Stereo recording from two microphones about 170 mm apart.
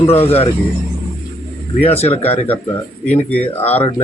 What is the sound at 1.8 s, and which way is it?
Speech, 35° left (ahead or behind).